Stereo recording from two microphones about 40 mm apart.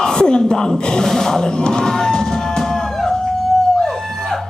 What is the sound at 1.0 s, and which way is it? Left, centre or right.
Music, centre.